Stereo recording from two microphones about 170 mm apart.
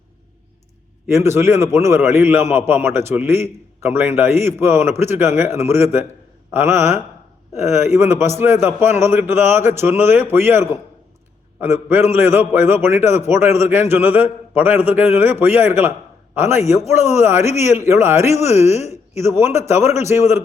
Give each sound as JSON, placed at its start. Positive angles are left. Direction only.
{"t": 1.0, "sound": "a man's voice", "side_deg": -15}
{"t": 17.4, "sound": "speech", "side_deg": 40}
{"t": 17.7, "sound": "a man's voice", "side_deg": -15}
{"t": 18.4, "sound": "speech", "side_deg": 40}
{"t": 18.9, "sound": "a man's voice", "side_deg": -15}